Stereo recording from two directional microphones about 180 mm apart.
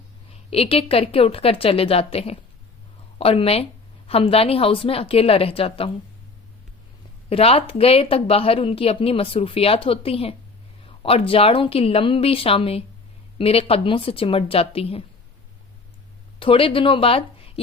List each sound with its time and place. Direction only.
0.5 s a woman's voice: 35° left (ahead or behind)
7.3 s a woman's voice: 35° left (ahead or behind)
16.4 s speech: 30° left (ahead or behind)